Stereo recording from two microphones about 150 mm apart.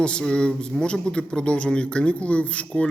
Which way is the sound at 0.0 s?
5° left (ahead or behind).